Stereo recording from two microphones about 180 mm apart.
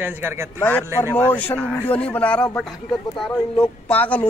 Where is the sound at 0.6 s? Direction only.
10° left (ahead or behind).